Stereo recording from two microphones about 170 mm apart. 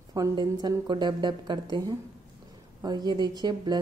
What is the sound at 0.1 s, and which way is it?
Speech, 25° right (ahead or behind).